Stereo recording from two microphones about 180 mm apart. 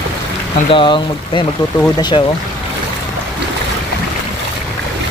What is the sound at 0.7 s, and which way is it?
Speech, 25° left (ahead or behind).